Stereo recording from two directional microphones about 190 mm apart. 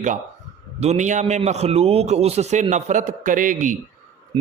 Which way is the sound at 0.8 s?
40° right (ahead or behind).